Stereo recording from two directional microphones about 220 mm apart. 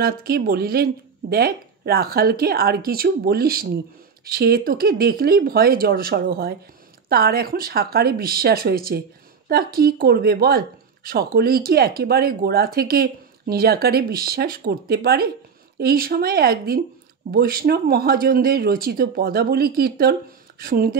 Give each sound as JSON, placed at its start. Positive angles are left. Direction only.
{"t": 0.0, "sound": "speech", "side_deg": -45}